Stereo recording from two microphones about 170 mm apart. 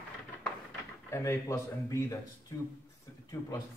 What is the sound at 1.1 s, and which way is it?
A man's voice, 15° left (ahead or behind).